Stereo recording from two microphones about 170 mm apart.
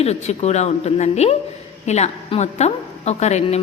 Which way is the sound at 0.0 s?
40° left (ahead or behind).